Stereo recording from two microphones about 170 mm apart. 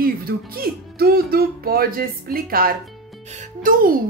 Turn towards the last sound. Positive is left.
turn(degrees=-55)  # may be behind; listen again after turning